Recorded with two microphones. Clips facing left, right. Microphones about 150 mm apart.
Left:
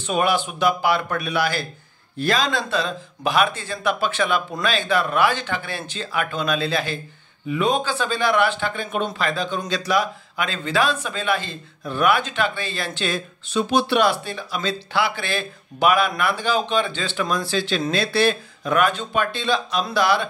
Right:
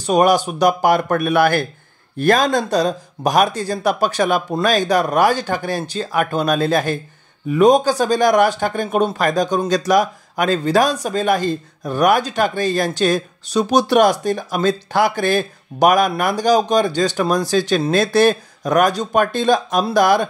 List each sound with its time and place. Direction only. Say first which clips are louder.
0.0 s speech: right 7 dB; 40° right (ahead or behind)